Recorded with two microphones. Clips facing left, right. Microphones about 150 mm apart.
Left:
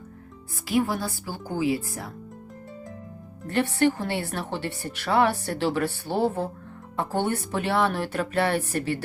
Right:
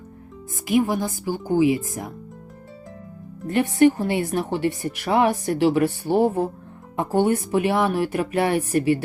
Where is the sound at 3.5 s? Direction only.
15° right (ahead or behind).